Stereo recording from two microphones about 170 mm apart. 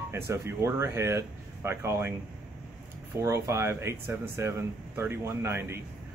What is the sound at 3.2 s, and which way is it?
Speech, 15° right (ahead or behind).